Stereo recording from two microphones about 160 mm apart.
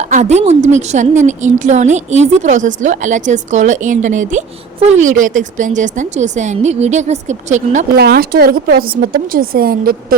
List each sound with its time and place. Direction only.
0.1 s a woman's voice: 45° right (ahead or behind)
7.9 s speech: 75° right (ahead or behind)